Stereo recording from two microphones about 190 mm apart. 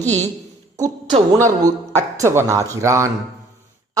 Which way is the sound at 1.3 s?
20° right (ahead or behind).